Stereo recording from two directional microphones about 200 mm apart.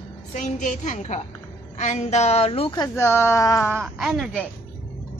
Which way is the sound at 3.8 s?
Centre (ahead or behind).